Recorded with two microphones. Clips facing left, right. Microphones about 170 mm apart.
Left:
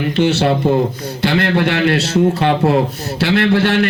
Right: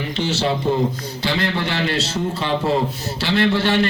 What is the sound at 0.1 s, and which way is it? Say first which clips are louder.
A man's voice: left 7 dB; 60° left (ahead or behind).